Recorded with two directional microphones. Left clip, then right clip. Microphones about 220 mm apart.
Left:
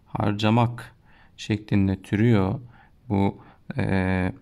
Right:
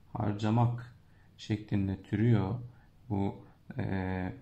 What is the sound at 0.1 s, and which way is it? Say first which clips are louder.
Speech: left 10 dB; 35° left (ahead or behind).